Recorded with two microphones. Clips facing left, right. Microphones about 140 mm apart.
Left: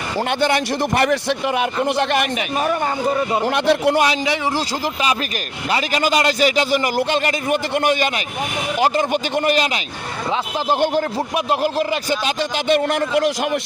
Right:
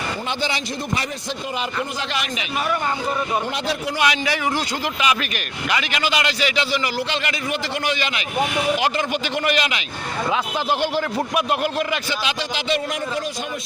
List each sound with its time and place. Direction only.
0.3 s a man's voice: 55° left (ahead or behind)
3.4 s a man's voice: 65° left (ahead or behind)
5.7 s a man's voice: 40° left (ahead or behind)
10.7 s a man's voice: 45° left (ahead or behind)
11.3 s speech: 35° left (ahead or behind)
12.6 s a man's voice: 60° left (ahead or behind)